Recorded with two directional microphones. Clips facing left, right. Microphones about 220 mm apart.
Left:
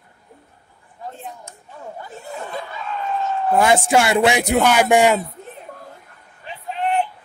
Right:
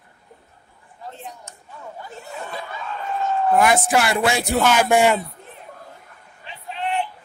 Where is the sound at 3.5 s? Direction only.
25° left (ahead or behind).